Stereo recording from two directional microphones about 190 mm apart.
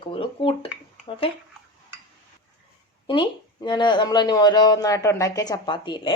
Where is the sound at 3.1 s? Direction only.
25° left (ahead or behind).